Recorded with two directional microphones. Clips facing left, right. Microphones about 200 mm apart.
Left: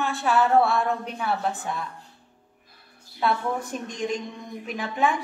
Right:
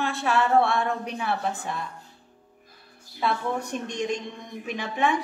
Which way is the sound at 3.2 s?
Centre (ahead or behind).